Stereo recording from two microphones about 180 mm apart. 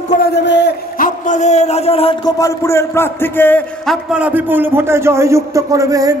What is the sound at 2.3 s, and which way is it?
A man's voice, 15° left (ahead or behind).